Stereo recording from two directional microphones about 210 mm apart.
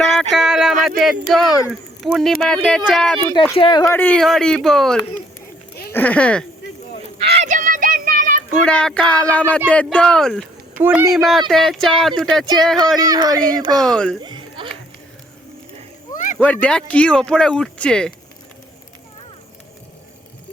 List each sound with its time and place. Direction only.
0.2 s a sound: centre (ahead or behind)
1.3 s speech: centre (ahead or behind)
3.2 s speech: 15° left (ahead or behind)
7.3 s child singing: 35° right (ahead or behind)
8.5 s speech: 5° left (ahead or behind)
10.8 s speech: 10° right (ahead or behind)
13.1 s speech: 20° right (ahead or behind)
13.8 s speech: 5° left (ahead or behind)
14.2 s music: 20° right (ahead or behind)
16.1 s a sound: 35° left (ahead or behind)
16.4 s speech: 5° left (ahead or behind)